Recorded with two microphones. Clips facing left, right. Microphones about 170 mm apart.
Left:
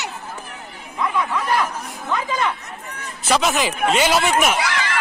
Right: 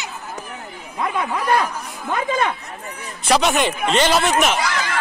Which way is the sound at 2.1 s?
50° right (ahead or behind).